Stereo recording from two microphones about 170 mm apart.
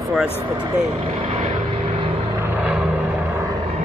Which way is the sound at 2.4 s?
10° right (ahead or behind).